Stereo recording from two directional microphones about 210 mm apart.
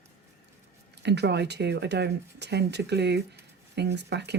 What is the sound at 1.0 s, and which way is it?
Speech, 55° right (ahead or behind).